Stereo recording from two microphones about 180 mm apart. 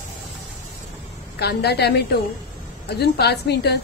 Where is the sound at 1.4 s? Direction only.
65° left (ahead or behind).